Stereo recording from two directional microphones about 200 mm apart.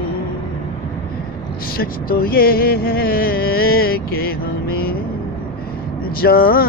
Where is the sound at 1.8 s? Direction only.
50° left (ahead or behind).